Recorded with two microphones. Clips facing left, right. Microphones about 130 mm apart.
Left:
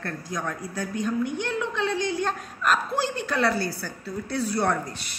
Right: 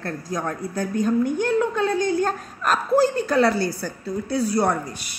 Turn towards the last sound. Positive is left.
turn(degrees=-10)  # may be behind; listen again after turning